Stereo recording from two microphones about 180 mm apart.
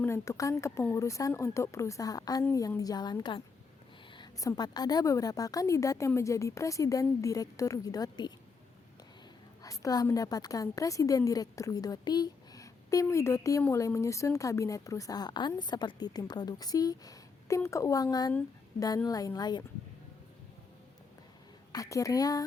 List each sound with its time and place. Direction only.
0.0 s a woman's voice: 15° left (ahead or behind)
9.6 s speech: 20° left (ahead or behind)
21.7 s speech: 20° left (ahead or behind)